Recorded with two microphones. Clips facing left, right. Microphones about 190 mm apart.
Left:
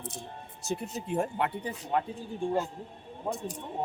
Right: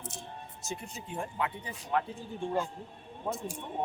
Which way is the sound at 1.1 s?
45° left (ahead or behind).